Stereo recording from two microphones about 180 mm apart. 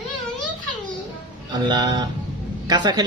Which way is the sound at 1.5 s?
25° right (ahead or behind).